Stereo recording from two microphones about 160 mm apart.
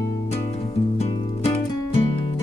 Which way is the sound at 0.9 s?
40° left (ahead or behind).